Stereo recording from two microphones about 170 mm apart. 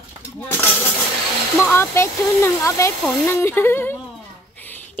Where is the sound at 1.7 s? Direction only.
15° left (ahead or behind).